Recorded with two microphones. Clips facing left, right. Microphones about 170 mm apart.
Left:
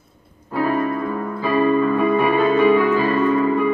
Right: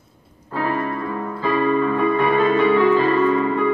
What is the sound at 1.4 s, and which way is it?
Music, 10° left (ahead or behind).